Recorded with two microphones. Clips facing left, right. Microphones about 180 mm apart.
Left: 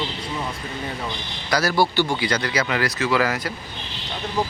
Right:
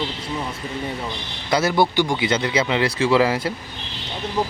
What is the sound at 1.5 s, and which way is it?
Speech, 25° right (ahead or behind).